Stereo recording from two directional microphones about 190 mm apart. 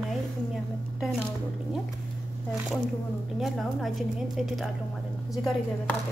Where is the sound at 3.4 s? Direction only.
Centre (ahead or behind).